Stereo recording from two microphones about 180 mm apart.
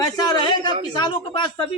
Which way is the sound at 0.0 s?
20° left (ahead or behind).